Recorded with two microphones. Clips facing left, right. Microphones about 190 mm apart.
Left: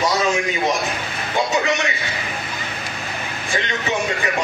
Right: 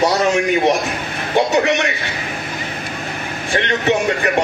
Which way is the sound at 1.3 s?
65° right (ahead or behind).